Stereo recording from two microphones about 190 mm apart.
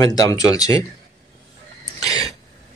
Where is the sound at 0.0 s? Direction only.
20° left (ahead or behind).